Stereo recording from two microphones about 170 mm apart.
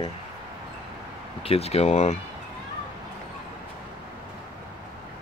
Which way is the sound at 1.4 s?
35° left (ahead or behind).